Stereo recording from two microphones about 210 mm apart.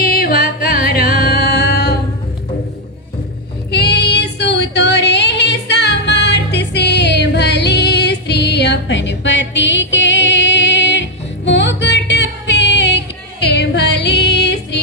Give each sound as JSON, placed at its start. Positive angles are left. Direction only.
{"t": 0.0, "sound": "music", "side_deg": 45}
{"t": 3.7, "sound": "female singing", "side_deg": 50}
{"t": 13.5, "sound": "music", "side_deg": 55}